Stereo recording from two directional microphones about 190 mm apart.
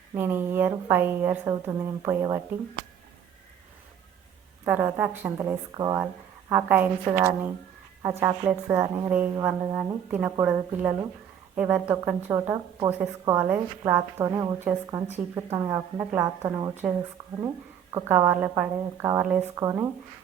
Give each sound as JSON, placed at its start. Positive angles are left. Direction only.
{"t": 0.1, "sound": "a woman's voice", "side_deg": -10}
{"t": 4.6, "sound": "a woman's voice", "side_deg": -10}
{"t": 17.9, "sound": "a woman's voice", "side_deg": -15}